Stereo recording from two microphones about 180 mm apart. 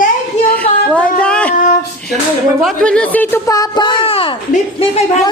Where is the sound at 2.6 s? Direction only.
5° left (ahead or behind); by 4.3 s 30° left (ahead or behind).